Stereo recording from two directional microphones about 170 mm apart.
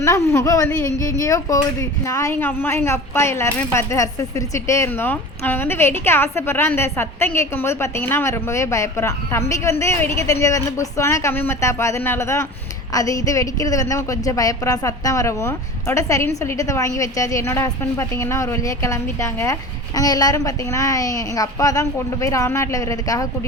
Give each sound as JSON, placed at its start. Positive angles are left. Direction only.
{"t": 0.0, "sound": "a woman's voice", "side_deg": 15}